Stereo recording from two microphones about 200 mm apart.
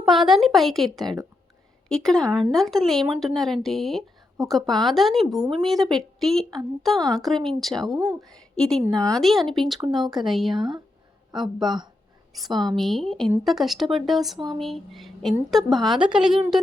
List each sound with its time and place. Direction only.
0.0 s speech: centre (ahead or behind)
10.6 s speech: 20° right (ahead or behind)
12.3 s a woman's voice: centre (ahead or behind)
14.3 s speech: 25° right (ahead or behind)
14.6 s speech: centre (ahead or behind)